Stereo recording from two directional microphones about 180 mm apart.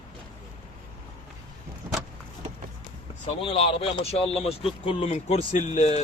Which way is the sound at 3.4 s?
35° left (ahead or behind).